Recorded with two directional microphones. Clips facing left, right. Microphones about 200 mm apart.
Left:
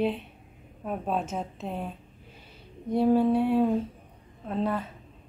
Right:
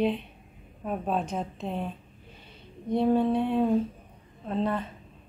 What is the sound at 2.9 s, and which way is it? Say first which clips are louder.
A woman's voice: left 1 dB; 5° left (ahead or behind).